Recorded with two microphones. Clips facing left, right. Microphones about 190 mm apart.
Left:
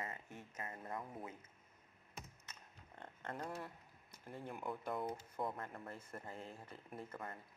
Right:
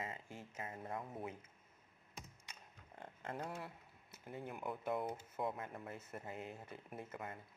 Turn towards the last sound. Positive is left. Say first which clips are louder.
# right 1 dB
turn(degrees=-10)  # may be behind; listen again after turning